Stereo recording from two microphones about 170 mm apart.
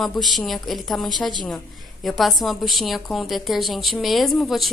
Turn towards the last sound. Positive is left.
turn(degrees=0)  # may be behind; listen again after turning